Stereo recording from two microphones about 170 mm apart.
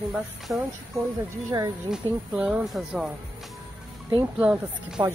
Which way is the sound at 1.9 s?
5° right (ahead or behind).